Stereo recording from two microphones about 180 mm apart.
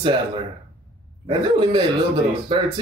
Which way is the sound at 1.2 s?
30° right (ahead or behind).